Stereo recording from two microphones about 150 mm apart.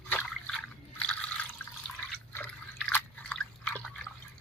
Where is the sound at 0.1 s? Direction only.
10° left (ahead or behind).